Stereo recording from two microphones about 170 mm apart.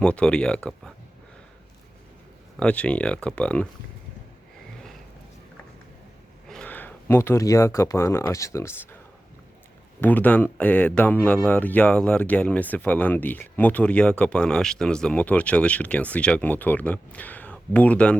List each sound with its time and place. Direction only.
0.0 s speech: 5° left (ahead or behind)
2.6 s speech: 5° left (ahead or behind)
6.5 s speech: 10° left (ahead or behind)
10.0 s speech: 10° left (ahead or behind)